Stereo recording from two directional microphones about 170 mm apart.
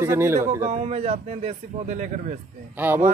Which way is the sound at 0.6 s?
40° right (ahead or behind).